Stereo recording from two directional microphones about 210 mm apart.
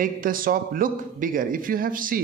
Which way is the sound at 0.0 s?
40° right (ahead or behind).